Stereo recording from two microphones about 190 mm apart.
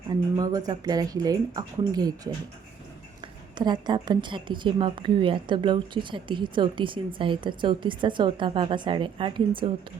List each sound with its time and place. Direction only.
0.1 s a woman's voice: 20° right (ahead or behind)
3.5 s a woman's voice: 25° right (ahead or behind)